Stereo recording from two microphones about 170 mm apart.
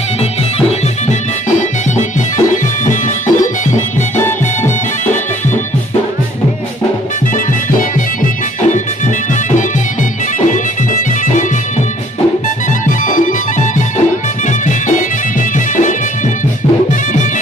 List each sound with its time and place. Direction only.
2.0 s music: 45° left (ahead or behind)
9.3 s music: 45° left (ahead or behind)
12.8 s music: 50° left (ahead or behind)
14.7 s music: 50° left (ahead or behind)